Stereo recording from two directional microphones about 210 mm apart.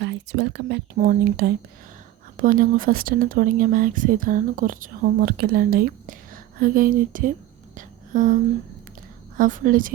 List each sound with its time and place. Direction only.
0.0 s speech: 55° right (ahead or behind); by 7.3 s 40° right (ahead or behind)
7.8 s whispering: 40° right (ahead or behind)
9.4 s speech: 40° right (ahead or behind)